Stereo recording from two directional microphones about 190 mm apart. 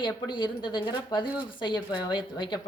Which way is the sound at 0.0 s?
25° left (ahead or behind).